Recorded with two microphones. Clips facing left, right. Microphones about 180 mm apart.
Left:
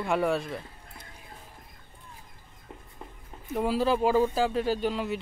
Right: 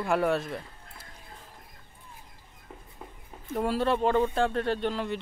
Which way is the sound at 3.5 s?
Centre (ahead or behind).